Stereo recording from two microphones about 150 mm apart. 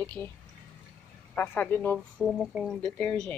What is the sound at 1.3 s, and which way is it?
Speech, 10° left (ahead or behind).